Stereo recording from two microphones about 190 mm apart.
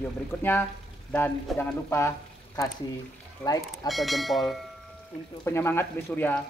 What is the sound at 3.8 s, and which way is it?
Speech, centre (ahead or behind).